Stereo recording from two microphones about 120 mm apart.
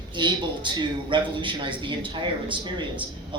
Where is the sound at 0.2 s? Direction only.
40° right (ahead or behind).